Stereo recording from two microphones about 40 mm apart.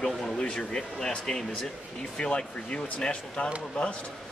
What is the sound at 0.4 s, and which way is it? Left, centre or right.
Speech, left.